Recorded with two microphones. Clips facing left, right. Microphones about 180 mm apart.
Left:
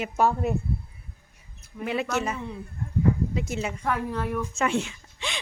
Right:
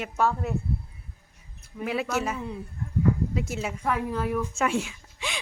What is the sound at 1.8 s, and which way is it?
Speech, centre (ahead or behind).